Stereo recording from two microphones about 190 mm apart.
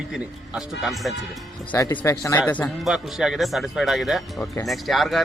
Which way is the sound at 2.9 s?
Centre (ahead or behind).